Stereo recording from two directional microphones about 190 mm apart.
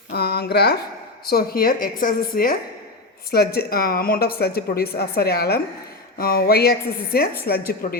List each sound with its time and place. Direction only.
0.1 s a woman's voice: 60° left (ahead or behind)